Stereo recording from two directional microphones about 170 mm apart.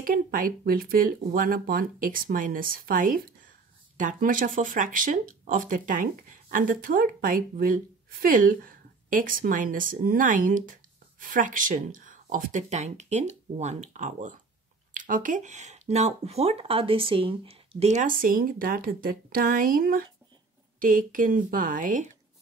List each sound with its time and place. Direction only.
0.0 s speech: 55° right (ahead or behind)